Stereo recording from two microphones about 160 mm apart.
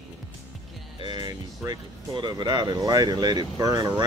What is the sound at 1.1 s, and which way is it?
Speech, 30° right (ahead or behind).